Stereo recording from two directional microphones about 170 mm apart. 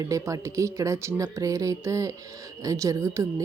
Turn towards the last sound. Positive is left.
turn(degrees=-20)  # may be behind; listen again after turning